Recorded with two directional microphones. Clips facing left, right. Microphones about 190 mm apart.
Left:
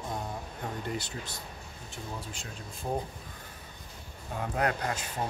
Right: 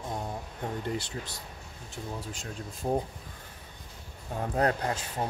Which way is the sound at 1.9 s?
40° right (ahead or behind).